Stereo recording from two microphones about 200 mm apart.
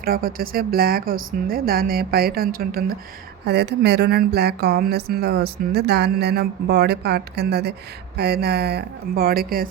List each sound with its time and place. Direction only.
0.0 s speech: 45° right (ahead or behind)